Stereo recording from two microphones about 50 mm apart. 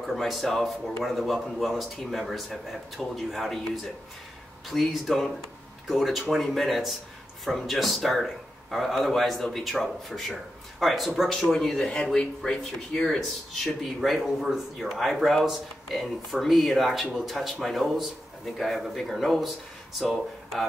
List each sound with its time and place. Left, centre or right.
0.1 s a man's voice: centre
11.5 s speech: centre
14.0 s a man's voice: centre